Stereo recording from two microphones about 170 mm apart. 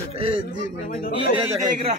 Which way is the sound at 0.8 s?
55° left (ahead or behind).